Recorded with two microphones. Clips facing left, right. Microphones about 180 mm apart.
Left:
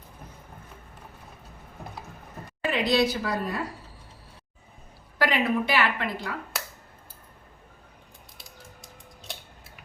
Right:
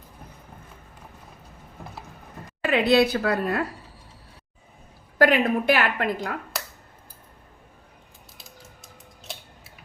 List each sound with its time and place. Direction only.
2.6 s a woman's voice: 60° right (ahead or behind)
5.1 s a woman's voice: 50° right (ahead or behind)